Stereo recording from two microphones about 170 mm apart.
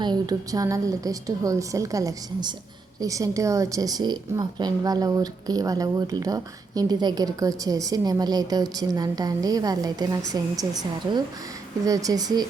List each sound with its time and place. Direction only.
0.0 s a woman's voice: 25° right (ahead or behind)
11.9 s a woman's voice: 20° right (ahead or behind)